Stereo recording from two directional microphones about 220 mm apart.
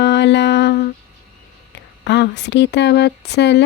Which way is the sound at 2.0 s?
50° left (ahead or behind).